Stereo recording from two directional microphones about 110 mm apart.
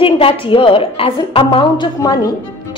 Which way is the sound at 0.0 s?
55° left (ahead or behind).